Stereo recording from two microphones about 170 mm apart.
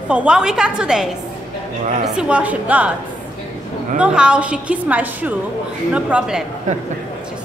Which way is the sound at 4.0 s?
5° right (ahead or behind).